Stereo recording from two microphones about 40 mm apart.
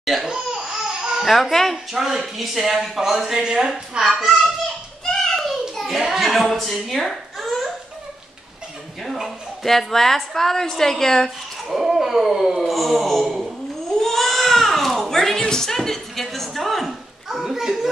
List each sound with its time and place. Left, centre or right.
0.0 s laughter: centre
0.3 s crying: centre
1.2 s speech: centre
1.9 s speech: centre
5.3 s a sound: centre
9.0 s a woman's voice: centre
11.7 s speech: centre
14.0 s baby cry: centre
15.0 s a sound: centre
15.4 s speech: centre